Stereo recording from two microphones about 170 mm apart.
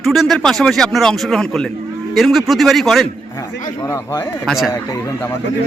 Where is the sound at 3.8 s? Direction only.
20° left (ahead or behind).